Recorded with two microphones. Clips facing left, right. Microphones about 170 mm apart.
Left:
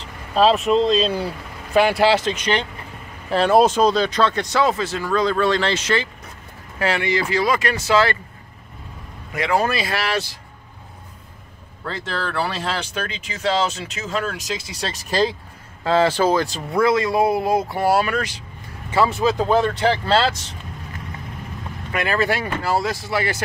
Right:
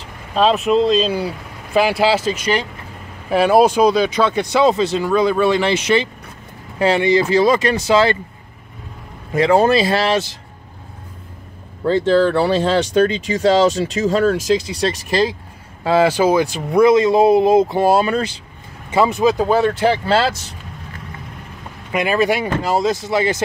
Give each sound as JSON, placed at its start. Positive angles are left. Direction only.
{"t": 0.4, "sound": "speech", "side_deg": 0}
{"t": 6.8, "sound": "speech", "side_deg": -25}
{"t": 9.3, "sound": "speech", "side_deg": -30}
{"t": 11.8, "sound": "speech", "side_deg": -25}
{"t": 15.8, "sound": "speech", "side_deg": -10}
{"t": 18.9, "sound": "speech", "side_deg": -15}
{"t": 21.9, "sound": "speech", "side_deg": -15}